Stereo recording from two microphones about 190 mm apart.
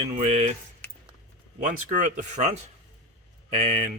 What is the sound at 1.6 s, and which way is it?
Speech, 40° right (ahead or behind).